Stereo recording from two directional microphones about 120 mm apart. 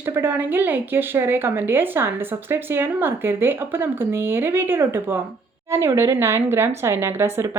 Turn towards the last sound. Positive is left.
turn(degrees=-20)  # may be behind; listen again after turning